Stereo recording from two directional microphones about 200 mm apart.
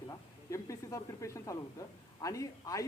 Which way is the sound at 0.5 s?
15° left (ahead or behind).